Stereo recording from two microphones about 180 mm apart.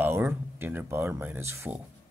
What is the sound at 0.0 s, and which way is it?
Speech, 10° right (ahead or behind).